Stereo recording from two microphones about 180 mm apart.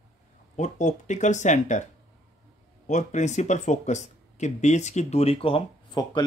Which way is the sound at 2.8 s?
40° left (ahead or behind).